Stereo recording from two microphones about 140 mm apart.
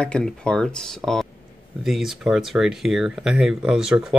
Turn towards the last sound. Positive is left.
turn(degrees=-5)  # may be behind; listen again after turning